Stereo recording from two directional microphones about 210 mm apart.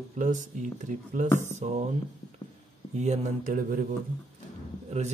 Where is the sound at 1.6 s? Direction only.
35° right (ahead or behind).